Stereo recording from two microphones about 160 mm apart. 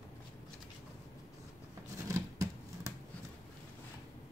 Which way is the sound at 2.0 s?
20° right (ahead or behind).